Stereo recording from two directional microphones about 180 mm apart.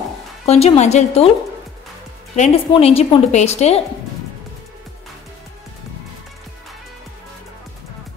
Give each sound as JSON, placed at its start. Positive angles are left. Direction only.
{"t": 0.5, "sound": "a woman's voice", "side_deg": 35}
{"t": 2.3, "sound": "a woman's voice", "side_deg": 40}